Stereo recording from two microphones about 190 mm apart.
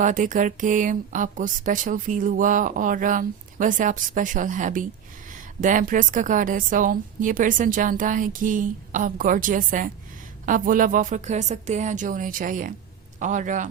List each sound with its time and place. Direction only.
0.0 s a man's voice: 45° right (ahead or behind)